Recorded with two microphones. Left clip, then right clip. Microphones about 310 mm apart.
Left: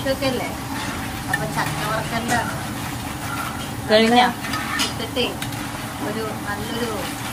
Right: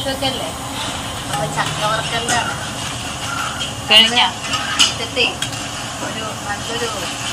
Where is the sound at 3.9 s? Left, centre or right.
Left.